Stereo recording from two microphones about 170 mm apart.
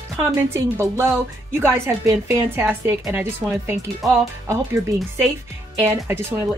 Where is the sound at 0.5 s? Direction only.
15° right (ahead or behind).